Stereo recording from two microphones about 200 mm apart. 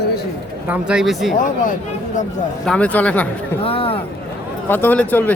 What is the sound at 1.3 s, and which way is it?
Speech, 40° left (ahead or behind).